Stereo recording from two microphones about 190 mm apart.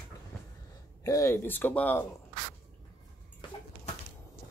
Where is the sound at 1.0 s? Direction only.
15° left (ahead or behind).